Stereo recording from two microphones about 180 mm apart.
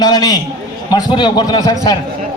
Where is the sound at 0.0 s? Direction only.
20° left (ahead or behind).